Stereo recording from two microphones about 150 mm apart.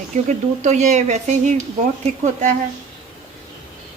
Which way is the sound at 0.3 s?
55° right (ahead or behind).